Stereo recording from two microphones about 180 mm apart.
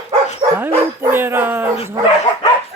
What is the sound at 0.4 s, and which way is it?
Dog, 30° right (ahead or behind).